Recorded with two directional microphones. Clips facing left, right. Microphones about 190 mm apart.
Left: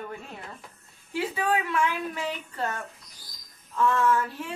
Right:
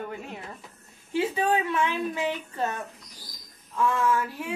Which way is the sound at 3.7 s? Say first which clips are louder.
Left 1 dB; 15° right (ahead or behind).